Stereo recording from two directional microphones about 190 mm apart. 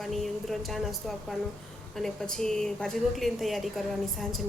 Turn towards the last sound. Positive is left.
turn(degrees=0)  # may be behind; listen again after turning